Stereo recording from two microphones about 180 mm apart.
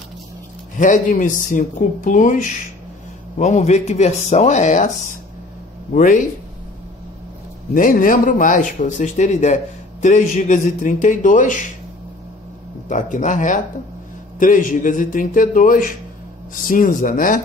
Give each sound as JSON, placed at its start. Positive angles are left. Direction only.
{"t": 0.7, "sound": "speech", "side_deg": 45}
{"t": 5.9, "sound": "speech", "side_deg": 45}
{"t": 7.7, "sound": "speech", "side_deg": 50}
{"t": 12.8, "sound": "speech", "side_deg": 45}